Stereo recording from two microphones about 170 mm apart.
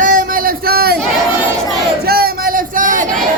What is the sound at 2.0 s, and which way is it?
Speech, 65° right (ahead or behind).